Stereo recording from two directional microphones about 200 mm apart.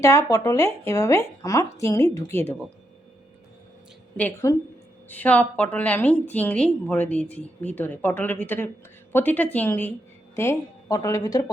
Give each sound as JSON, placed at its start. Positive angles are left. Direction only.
{"t": 0.0, "sound": "a woman's voice", "side_deg": 15}
{"t": 4.2, "sound": "a woman's voice", "side_deg": 10}